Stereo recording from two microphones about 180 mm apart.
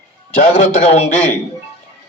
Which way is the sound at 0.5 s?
35° left (ahead or behind).